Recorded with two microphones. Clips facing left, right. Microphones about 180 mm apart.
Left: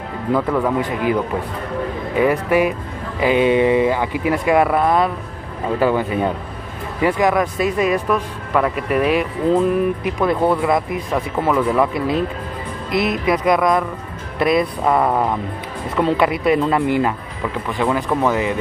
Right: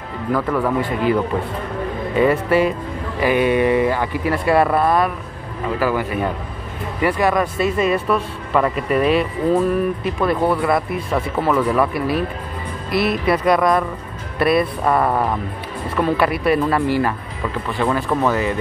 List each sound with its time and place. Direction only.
0.6 s speech: 15° left (ahead or behind)
2.1 s speech: 10° left (ahead or behind)
15.0 s speech: 5° left (ahead or behind)
16.0 s speech: 20° left (ahead or behind)